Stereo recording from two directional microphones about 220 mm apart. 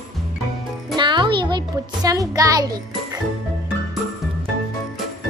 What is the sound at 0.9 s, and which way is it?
Music, 20° right (ahead or behind).